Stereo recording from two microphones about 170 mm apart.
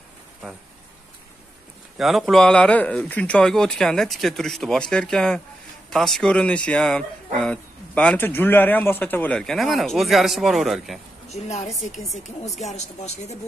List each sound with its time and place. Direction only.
2.0 s a man's voice: centre (ahead or behind)
11.2 s a woman's voice: 40° left (ahead or behind)